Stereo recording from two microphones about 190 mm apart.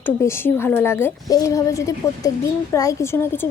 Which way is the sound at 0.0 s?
10° left (ahead or behind).